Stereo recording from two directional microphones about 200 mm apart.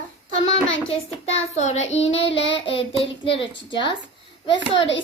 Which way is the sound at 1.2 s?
35° left (ahead or behind).